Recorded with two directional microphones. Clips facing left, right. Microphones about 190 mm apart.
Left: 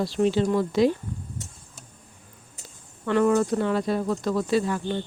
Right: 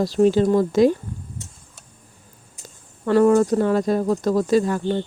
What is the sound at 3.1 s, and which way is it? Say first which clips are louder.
Speech: right 5 dB; 40° right (ahead or behind).